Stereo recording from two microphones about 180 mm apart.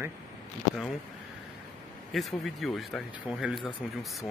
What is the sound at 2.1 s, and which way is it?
Speech, centre (ahead or behind).